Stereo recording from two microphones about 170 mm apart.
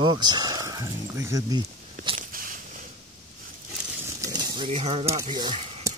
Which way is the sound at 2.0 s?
50° right (ahead or behind).